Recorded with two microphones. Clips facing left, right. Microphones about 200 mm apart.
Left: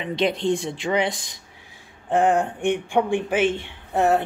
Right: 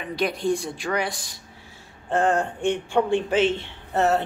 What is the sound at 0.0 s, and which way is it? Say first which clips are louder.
Speech: left 2 dB; 20° left (ahead or behind).